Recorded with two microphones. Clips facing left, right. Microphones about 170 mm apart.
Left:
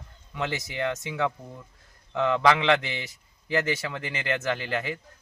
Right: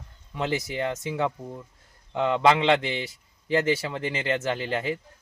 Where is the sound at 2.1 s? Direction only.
30° right (ahead or behind).